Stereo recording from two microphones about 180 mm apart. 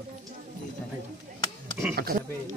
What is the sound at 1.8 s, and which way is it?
Speech, 10° right (ahead or behind).